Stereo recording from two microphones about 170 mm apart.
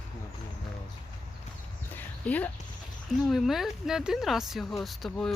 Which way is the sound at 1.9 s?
10° left (ahead or behind).